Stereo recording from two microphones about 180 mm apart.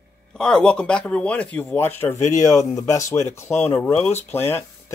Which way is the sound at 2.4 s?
20° left (ahead or behind).